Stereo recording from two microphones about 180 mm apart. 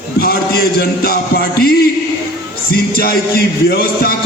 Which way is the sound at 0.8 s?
60° left (ahead or behind).